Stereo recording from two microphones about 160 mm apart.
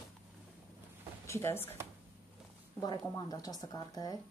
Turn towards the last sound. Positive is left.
turn(degrees=25)  # may be behind; listen again after turning